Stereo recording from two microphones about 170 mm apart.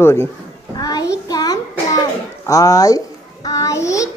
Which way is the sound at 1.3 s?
20° left (ahead or behind).